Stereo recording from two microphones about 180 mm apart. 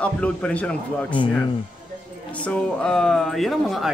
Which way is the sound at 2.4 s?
5° left (ahead or behind).